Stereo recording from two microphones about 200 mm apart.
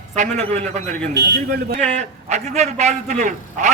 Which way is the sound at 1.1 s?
55° right (ahead or behind).